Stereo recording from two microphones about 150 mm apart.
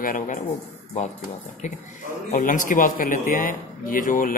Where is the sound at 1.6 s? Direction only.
55° left (ahead or behind).